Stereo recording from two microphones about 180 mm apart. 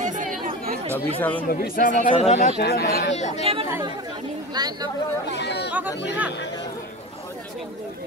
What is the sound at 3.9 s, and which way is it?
Speech, 25° right (ahead or behind).